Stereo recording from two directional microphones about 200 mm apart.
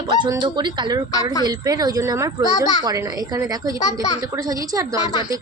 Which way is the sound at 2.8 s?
20° right (ahead or behind).